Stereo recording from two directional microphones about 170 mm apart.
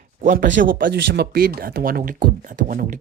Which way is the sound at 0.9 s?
75° right (ahead or behind).